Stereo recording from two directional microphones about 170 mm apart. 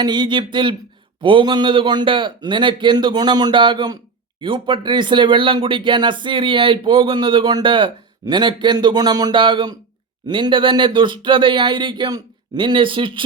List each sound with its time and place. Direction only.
0.0 s a man's voice: 25° right (ahead or behind)